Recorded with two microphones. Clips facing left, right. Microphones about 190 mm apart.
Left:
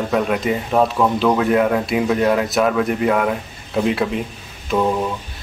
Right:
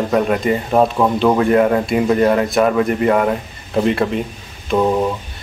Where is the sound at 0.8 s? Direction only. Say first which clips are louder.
Right 2 dB; 20° right (ahead or behind).